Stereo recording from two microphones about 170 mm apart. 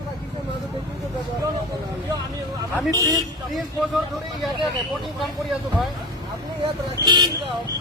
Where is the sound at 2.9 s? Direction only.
20° right (ahead or behind).